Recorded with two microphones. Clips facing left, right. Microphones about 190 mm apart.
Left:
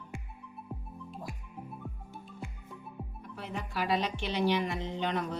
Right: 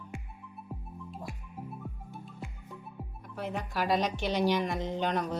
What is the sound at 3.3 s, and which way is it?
Speech, 45° right (ahead or behind).